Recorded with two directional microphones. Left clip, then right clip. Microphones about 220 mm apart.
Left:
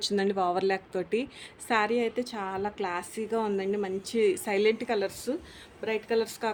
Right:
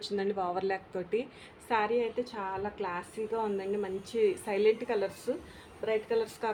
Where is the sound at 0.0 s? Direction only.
50° left (ahead or behind).